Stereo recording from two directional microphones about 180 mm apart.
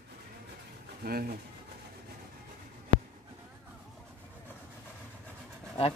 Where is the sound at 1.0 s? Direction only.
55° right (ahead or behind).